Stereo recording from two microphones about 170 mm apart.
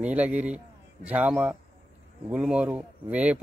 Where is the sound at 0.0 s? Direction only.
10° right (ahead or behind).